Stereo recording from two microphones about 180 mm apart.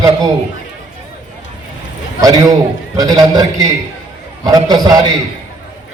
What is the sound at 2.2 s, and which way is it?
A man's voice, 20° right (ahead or behind).